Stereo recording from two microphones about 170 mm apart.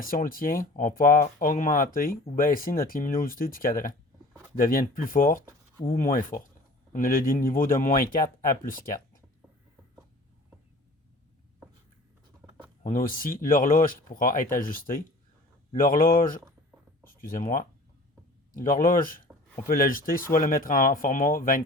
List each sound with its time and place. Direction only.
0.0 s speech: 55° left (ahead or behind)
12.8 s speech: 55° left (ahead or behind)